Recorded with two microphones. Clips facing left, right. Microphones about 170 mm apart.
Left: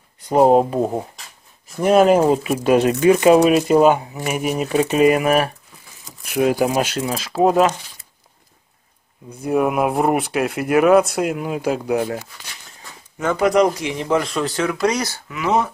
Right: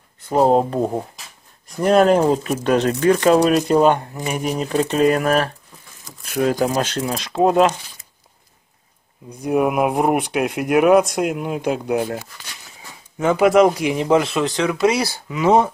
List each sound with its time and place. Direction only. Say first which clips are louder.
0.2 s speech: left 2 dB; 15° left (ahead or behind)
9.3 s speech: even; centre (ahead or behind)
13.2 s speech: right 3 dB; 10° right (ahead or behind)
13.8 s speech: right 4 dB; 20° right (ahead or behind)
14.5 s speech: right 1 dB; centre (ahead or behind)
15.2 s speech: right 5 dB; 25° right (ahead or behind)